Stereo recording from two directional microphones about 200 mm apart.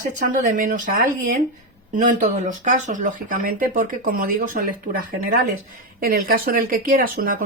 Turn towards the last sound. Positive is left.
turn(degrees=-45)  # may be behind; listen again after turning